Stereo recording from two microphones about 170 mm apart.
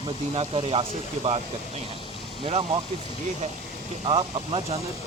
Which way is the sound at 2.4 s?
35° right (ahead or behind).